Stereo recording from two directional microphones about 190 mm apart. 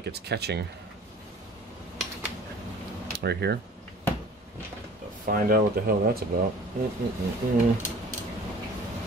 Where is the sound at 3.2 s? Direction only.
60° right (ahead or behind).